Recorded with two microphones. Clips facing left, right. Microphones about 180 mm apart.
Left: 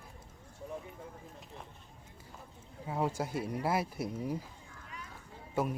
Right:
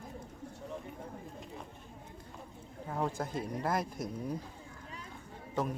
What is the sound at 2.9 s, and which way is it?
Speech, 10° left (ahead or behind).